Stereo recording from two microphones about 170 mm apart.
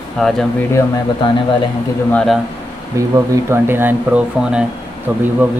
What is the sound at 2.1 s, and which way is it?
Speech, 5° left (ahead or behind).